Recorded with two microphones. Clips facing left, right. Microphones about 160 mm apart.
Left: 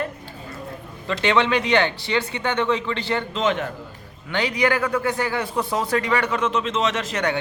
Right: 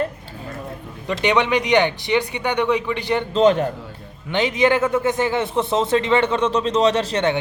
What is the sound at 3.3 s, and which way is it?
Speech, 35° right (ahead or behind).